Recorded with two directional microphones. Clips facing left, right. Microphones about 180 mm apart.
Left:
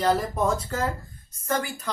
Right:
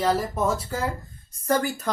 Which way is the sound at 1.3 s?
35° right (ahead or behind).